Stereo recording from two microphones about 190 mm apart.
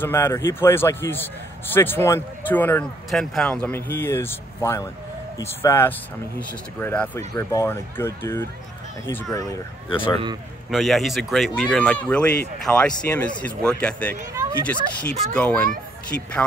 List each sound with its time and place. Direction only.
0.0 s a man's voice: 10° left (ahead or behind)
10.7 s a man's voice: centre (ahead or behind)